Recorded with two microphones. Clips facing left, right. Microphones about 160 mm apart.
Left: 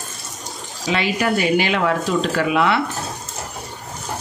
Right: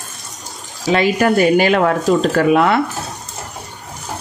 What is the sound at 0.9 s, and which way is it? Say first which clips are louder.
Speech: right 6 dB; 45° right (ahead or behind).